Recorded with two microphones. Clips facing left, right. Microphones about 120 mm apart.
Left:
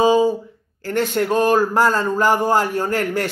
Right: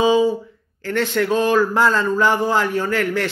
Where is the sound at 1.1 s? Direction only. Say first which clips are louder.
Even; 45° left (ahead or behind).